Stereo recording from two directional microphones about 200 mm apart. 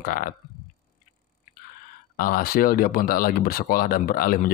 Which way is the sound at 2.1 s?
45° left (ahead or behind).